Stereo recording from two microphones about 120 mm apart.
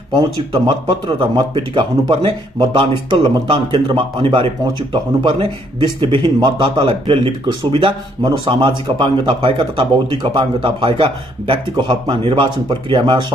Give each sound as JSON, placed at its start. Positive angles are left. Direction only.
{"t": 0.7, "sound": "speech", "side_deg": -40}